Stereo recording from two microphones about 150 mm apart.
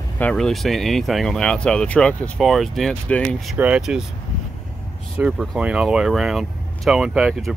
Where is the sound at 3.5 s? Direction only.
10° right (ahead or behind).